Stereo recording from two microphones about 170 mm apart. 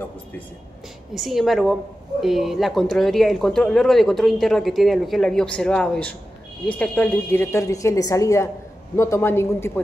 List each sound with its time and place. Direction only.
1.1 s a woman's voice: centre (ahead or behind)